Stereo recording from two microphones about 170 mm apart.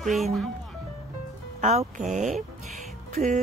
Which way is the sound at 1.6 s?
45° right (ahead or behind).